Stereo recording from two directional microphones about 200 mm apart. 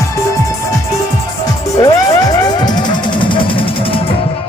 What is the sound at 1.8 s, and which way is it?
Music, 20° left (ahead or behind).